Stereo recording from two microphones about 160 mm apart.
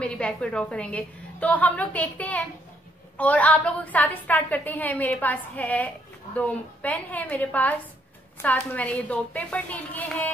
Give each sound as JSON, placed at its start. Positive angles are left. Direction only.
{"t": 0.0, "sound": "a woman's voice", "side_deg": 5}